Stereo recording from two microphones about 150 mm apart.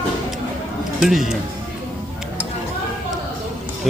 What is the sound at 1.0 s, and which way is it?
Speech, 5° right (ahead or behind).